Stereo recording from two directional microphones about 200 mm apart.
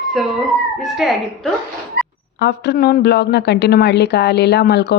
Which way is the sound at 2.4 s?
55° left (ahead or behind).